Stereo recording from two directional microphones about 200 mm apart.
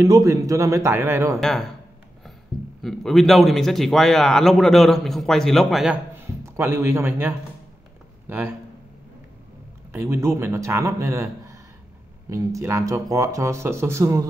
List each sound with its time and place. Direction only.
0.0 s speech: 15° right (ahead or behind)
1.4 s a man's voice: 5° left (ahead or behind)
2.8 s a man's voice: centre (ahead or behind)
6.1 s a man's voice: 15° right (ahead or behind)
9.9 s speech: 15° right (ahead or behind)